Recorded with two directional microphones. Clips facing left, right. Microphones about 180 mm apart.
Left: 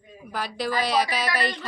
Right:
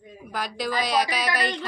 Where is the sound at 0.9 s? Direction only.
10° right (ahead or behind).